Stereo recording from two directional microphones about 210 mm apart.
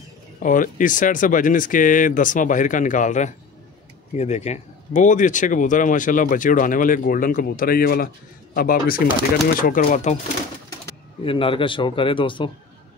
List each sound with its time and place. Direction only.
0.4 s speech: 40° left (ahead or behind)
11.2 s a man's voice: 25° left (ahead or behind)